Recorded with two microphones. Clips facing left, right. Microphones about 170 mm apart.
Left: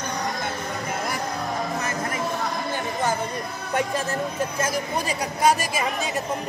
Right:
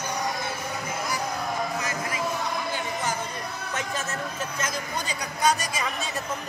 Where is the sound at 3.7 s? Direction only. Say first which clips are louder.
Left 8 dB; 30° left (ahead or behind).